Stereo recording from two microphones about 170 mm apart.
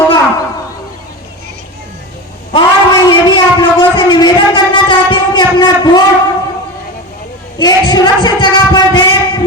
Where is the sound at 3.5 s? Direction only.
25° left (ahead or behind).